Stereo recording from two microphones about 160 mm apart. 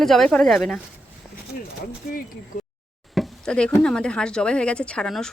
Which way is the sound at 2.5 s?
55° left (ahead or behind).